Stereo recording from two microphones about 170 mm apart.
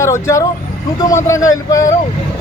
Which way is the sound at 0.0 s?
15° left (ahead or behind).